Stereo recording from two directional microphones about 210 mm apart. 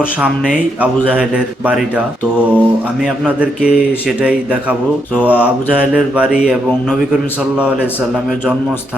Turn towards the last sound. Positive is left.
turn(degrees=-5)  # may be behind; listen again after turning